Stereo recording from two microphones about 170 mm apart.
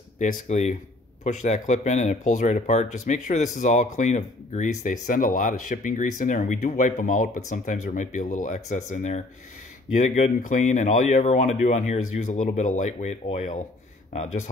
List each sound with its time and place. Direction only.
0.2 s speech: 45° left (ahead or behind)